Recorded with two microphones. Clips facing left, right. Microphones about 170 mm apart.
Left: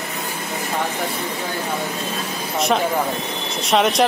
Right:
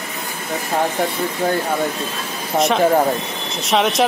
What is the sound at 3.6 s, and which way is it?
Speech, centre (ahead or behind).